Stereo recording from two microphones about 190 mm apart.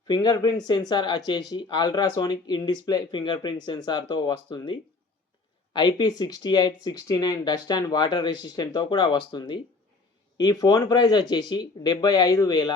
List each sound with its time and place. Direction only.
0.1 s speech: 20° left (ahead or behind)